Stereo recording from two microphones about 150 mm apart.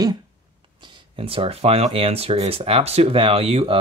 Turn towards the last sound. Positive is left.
turn(degrees=-40)  # may be behind; listen again after turning